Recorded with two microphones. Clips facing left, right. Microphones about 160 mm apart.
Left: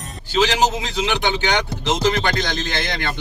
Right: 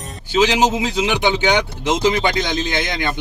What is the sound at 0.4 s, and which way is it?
Speech, 15° right (ahead or behind).